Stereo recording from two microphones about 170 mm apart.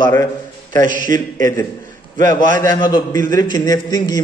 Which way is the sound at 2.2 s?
25° left (ahead or behind).